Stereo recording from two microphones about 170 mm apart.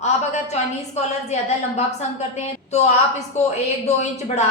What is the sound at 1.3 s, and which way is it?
Speech, 40° left (ahead or behind).